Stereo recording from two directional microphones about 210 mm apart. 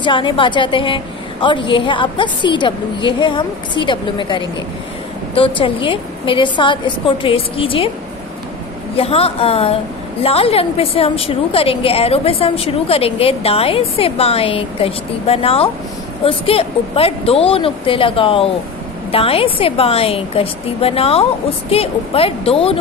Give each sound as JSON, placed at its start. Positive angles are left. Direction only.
{"t": 0.0, "sound": "a woman's voice", "side_deg": 25}
{"t": 8.9, "sound": "a woman's voice", "side_deg": 30}